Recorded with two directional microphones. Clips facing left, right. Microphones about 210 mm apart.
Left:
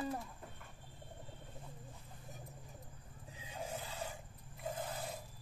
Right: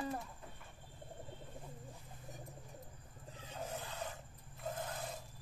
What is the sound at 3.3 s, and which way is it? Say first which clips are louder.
Roar: even; 10° left (ahead or behind).